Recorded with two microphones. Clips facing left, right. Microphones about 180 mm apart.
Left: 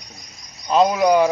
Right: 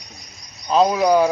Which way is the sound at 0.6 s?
5° left (ahead or behind).